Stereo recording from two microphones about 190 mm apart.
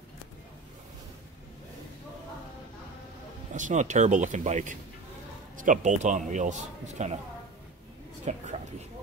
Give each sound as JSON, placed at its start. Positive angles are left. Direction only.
{"t": 3.5, "sound": "a man's voice", "side_deg": -40}
{"t": 8.3, "sound": "a man's voice", "side_deg": -40}